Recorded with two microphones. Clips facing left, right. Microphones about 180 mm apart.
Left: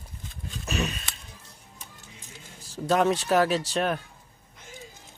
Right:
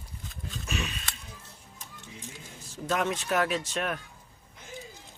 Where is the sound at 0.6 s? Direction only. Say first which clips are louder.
Left 6 dB; 40° left (ahead or behind).